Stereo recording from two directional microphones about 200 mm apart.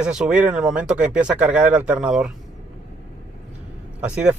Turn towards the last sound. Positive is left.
turn(degrees=-5)  # may be behind; listen again after turning